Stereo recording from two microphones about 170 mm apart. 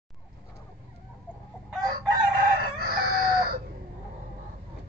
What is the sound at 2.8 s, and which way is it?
Chicken, 60° right (ahead or behind).